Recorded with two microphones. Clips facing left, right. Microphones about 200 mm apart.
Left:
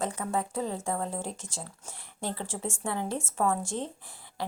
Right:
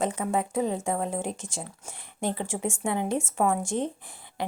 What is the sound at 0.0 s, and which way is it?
A woman's voice, 20° right (ahead or behind).